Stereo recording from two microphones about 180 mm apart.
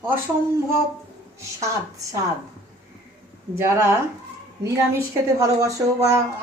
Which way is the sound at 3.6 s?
15° right (ahead or behind).